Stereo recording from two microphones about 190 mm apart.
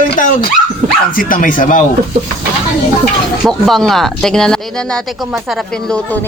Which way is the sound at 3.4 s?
Centre (ahead or behind).